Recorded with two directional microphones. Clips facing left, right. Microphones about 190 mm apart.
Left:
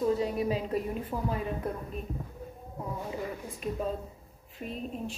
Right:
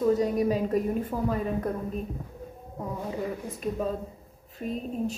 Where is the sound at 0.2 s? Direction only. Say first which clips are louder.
Right 5 dB; 45° right (ahead or behind).